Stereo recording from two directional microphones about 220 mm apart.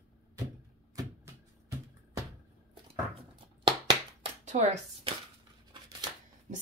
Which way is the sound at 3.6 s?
25° right (ahead or behind).